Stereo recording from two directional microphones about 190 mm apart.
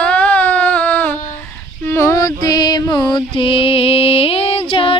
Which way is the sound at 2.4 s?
20° left (ahead or behind).